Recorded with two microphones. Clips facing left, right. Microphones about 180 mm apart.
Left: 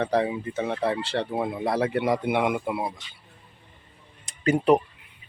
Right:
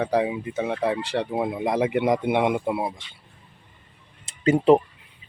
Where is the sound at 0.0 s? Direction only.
10° right (ahead or behind).